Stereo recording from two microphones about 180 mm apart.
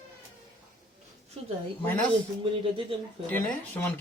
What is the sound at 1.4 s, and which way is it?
Speech, 35° right (ahead or behind).